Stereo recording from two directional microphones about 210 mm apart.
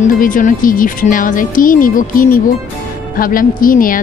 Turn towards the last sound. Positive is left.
turn(degrees=40)  # may be behind; listen again after turning